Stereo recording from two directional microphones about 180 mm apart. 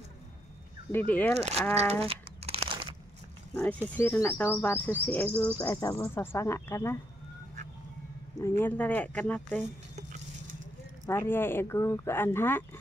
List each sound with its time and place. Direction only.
0.9 s bird: 10° left (ahead or behind)
2.0 s crumpling: 35° right (ahead or behind)
3.5 s bird: 5° left (ahead or behind)
8.4 s bird: 15° left (ahead or behind)
11.1 s bird: 15° left (ahead or behind)